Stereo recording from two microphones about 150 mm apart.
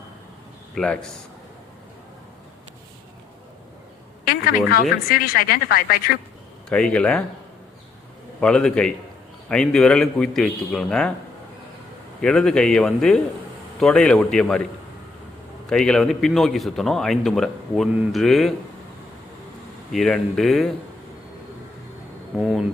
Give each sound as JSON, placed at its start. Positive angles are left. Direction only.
{"t": 0.8, "sound": "a man's voice", "side_deg": 0}
{"t": 4.3, "sound": "speech", "side_deg": 75}
{"t": 6.7, "sound": "speech", "side_deg": 5}
{"t": 8.4, "sound": "a man's voice", "side_deg": 5}
{"t": 12.2, "sound": "a man's voice", "side_deg": 5}
{"t": 15.7, "sound": "a man's voice", "side_deg": 5}
{"t": 19.9, "sound": "a man's voice", "side_deg": 0}